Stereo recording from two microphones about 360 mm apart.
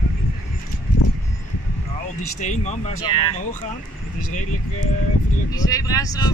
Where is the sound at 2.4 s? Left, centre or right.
Centre.